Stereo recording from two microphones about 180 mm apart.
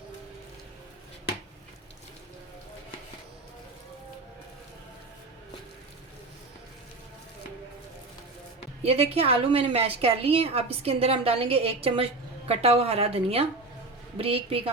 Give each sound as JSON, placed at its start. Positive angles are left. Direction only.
{"t": 8.8, "sound": "a woman's voice", "side_deg": -35}